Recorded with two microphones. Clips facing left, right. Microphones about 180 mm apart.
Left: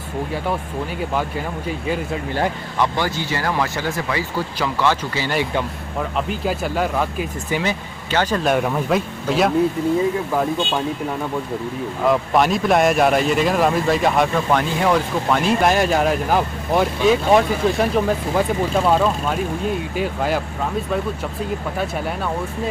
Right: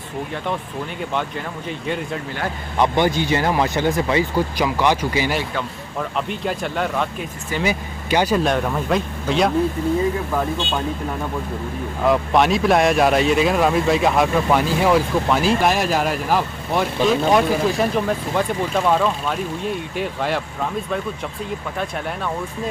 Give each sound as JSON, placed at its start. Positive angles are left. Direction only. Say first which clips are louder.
{"t": 2.8, "sound": "speech", "louder": "right 4 dB", "side_deg": -20}
{"t": 6.1, "sound": "speech", "louder": "left 2 dB", "side_deg": 0}
{"t": 7.6, "sound": "speech", "louder": "right 2 dB", "side_deg": -10}
{"t": 8.5, "sound": "speech", "louder": "left 2 dB", "side_deg": 5}
{"t": 12.1, "sound": "speech", "louder": "right 1 dB", "side_deg": 0}